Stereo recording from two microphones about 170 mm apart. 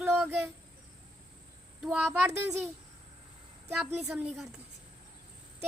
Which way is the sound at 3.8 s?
5° right (ahead or behind).